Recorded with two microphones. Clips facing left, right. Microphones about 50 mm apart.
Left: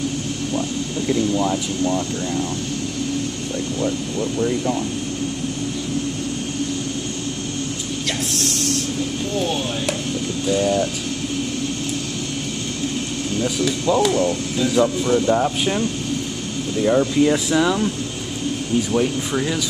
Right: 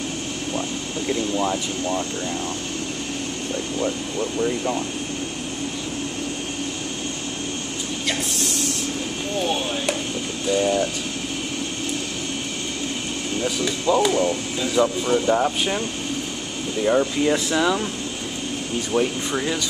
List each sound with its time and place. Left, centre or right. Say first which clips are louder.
0.6 s speech: left 3 dB; centre
3.8 s speech: left 3 dB; centre
9.4 s speech: right 1 dB; centre
13.4 s speech: left 3 dB; centre
16.8 s speech: left 3 dB; centre